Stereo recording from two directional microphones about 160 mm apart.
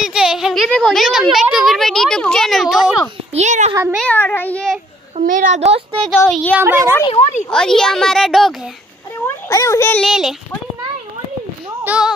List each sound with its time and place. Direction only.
0.0 s a woman's voice: 5° right (ahead or behind)
3.3 s a woman's voice: 45° right (ahead or behind)
4.0 s speech: 10° left (ahead or behind)
5.1 s a woman's voice: 55° right (ahead or behind)
5.9 s a woman's voice: 5° left (ahead or behind)
6.5 s speech: 15° right (ahead or behind)
7.1 s a woman's voice: 45° left (ahead or behind)
7.5 s a woman's voice: 5° left (ahead or behind)
9.5 s a child's voice: 20° left (ahead or behind)
9.9 s a woman's voice: centre (ahead or behind)
11.8 s speech: 10° right (ahead or behind)